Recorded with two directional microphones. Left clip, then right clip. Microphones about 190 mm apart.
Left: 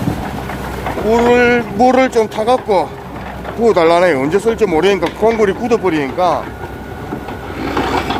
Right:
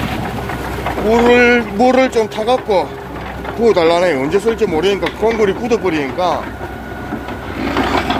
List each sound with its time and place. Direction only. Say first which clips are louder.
1.1 s speech: right 1 dB; 5° left (ahead or behind)
1.9 s speech: even; 20° left (ahead or behind)
4.6 s speech: left 2 dB; 35° left (ahead or behind)